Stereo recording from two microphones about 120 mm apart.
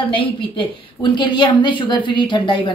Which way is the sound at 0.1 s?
45° left (ahead or behind).